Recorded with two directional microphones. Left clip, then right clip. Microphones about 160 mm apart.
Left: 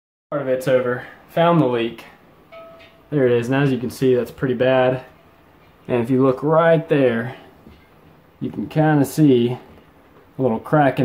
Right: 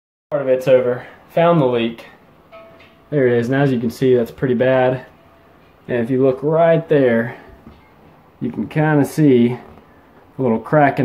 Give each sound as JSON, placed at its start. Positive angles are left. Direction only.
{"t": 0.3, "sound": "speech", "side_deg": 5}
{"t": 3.1, "sound": "speech", "side_deg": 0}
{"t": 5.9, "sound": "speech", "side_deg": 25}
{"t": 8.4, "sound": "speech", "side_deg": 15}
{"t": 9.0, "sound": "speech", "side_deg": 25}